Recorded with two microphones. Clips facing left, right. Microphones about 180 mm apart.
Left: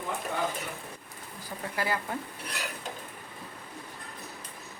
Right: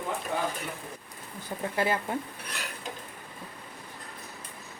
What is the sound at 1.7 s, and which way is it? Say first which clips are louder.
Speech: right 3 dB; 25° right (ahead or behind).